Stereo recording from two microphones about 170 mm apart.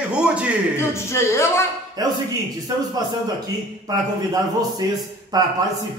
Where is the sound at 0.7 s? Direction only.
15° left (ahead or behind).